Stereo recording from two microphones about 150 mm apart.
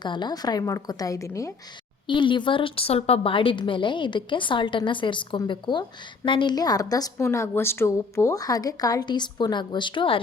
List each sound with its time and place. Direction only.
0.0 s a woman's voice: 30° left (ahead or behind)
2.0 s a woman's voice: 35° left (ahead or behind)